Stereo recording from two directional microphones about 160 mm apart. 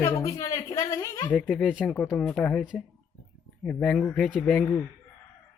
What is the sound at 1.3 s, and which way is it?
Speech, 5° left (ahead or behind).